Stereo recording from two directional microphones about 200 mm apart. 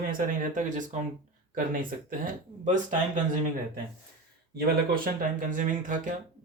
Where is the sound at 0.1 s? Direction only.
40° right (ahead or behind).